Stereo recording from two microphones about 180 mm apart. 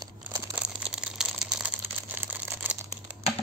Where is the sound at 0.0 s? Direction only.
15° right (ahead or behind).